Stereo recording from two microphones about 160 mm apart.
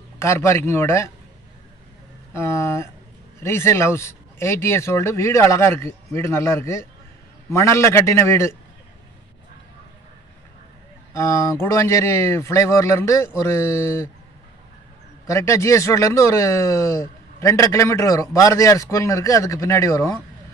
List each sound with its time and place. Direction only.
0.2 s speech: 15° left (ahead or behind)
2.3 s speech: 15° left (ahead or behind)
11.1 s speech: 20° left (ahead or behind)
15.2 s speech: 20° left (ahead or behind)